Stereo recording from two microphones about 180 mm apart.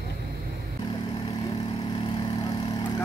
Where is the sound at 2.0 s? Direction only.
25° left (ahead or behind).